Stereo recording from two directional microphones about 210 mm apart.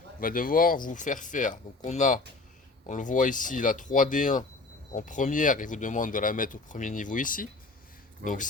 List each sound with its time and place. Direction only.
0.2 s speech: 40° left (ahead or behind)